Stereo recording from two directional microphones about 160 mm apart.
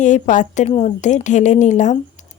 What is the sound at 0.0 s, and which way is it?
A woman's voice, 50° left (ahead or behind).